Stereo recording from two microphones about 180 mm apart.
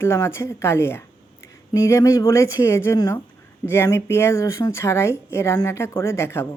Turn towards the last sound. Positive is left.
turn(degrees=15)  # may be behind; listen again after turning